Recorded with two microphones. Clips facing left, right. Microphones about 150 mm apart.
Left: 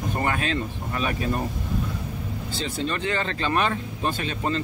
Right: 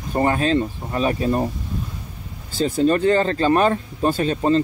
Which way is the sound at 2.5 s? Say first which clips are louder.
Right 11 dB; 45° right (ahead or behind).